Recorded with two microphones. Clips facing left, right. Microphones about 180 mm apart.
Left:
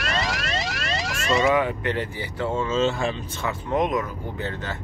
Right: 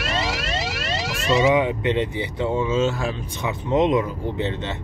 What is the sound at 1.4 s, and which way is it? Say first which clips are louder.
Speech: right 3 dB; 20° right (ahead or behind).